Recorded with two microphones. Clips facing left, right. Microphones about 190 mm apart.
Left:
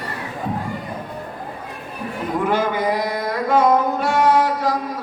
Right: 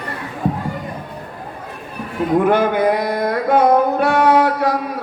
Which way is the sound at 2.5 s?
60° right (ahead or behind).